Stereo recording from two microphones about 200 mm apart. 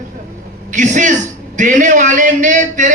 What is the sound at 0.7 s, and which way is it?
A man's voice, 40° right (ahead or behind).